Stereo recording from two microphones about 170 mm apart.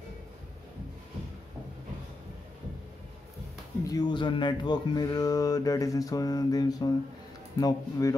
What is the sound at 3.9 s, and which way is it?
Speech, 25° left (ahead or behind).